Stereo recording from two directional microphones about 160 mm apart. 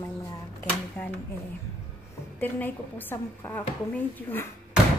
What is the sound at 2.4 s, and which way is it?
A woman's voice, 10° left (ahead or behind).